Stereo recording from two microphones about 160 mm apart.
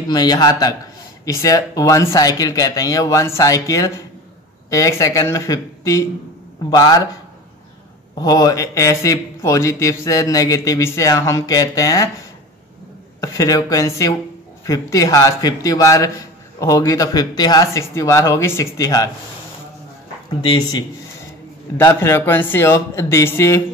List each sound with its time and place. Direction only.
0.1 s a man's voice: 25° left (ahead or behind)
8.2 s a man's voice: 25° left (ahead or behind)
13.2 s a man's voice: 20° left (ahead or behind)
20.4 s a man's voice: 25° left (ahead or behind)
21.7 s speech: 15° left (ahead or behind)